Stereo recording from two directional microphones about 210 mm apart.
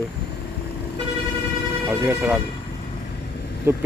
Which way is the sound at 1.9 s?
5° right (ahead or behind).